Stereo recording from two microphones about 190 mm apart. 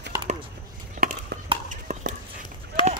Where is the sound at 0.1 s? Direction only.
20° right (ahead or behind).